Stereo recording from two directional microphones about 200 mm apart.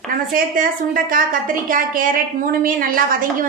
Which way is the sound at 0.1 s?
45° right (ahead or behind).